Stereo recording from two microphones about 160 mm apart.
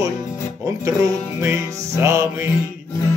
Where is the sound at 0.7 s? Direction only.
20° right (ahead or behind).